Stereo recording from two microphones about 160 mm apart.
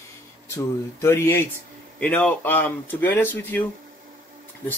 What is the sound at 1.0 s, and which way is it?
Speech, 15° left (ahead or behind).